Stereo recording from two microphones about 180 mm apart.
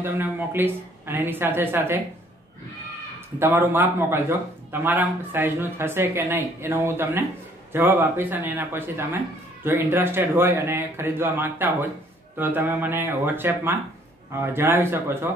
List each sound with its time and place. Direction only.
0.0 s speech: 15° right (ahead or behind)
3.3 s speech: 10° right (ahead or behind)